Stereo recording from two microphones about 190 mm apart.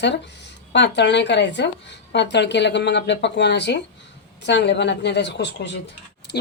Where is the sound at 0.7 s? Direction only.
65° left (ahead or behind).